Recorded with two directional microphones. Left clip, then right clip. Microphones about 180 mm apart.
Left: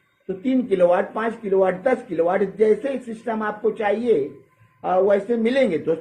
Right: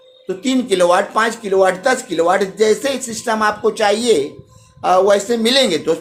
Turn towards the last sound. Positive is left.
turn(degrees=-20)  # may be behind; listen again after turning